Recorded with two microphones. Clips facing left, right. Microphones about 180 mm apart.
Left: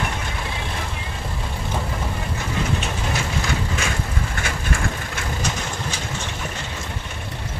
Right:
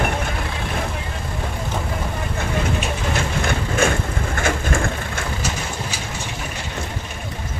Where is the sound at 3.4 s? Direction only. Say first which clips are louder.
Right 6 dB; 50° right (ahead or behind).